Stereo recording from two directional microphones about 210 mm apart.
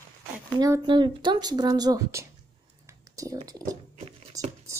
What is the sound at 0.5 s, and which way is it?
Speech, 20° right (ahead or behind).